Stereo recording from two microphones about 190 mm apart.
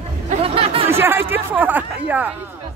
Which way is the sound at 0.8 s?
10° right (ahead or behind).